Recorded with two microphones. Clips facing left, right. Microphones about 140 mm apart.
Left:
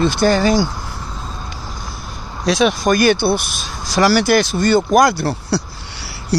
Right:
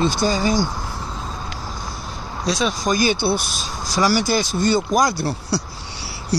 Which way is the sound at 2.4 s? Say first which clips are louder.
Left 6 dB; 70° left (ahead or behind).